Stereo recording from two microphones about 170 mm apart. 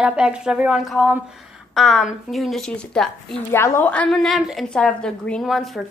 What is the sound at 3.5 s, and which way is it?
A woman's voice, 15° left (ahead or behind).